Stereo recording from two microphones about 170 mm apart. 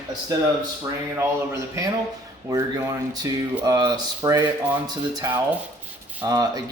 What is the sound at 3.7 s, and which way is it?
Speech, 25° right (ahead or behind).